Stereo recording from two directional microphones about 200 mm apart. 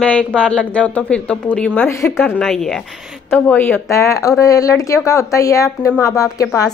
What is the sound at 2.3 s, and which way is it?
A woman's voice, centre (ahead or behind).